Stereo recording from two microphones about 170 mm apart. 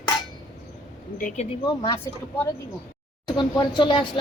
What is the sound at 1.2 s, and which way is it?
Speech, 50° left (ahead or behind).